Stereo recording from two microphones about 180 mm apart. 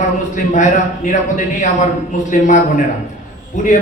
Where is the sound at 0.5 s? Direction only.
45° left (ahead or behind).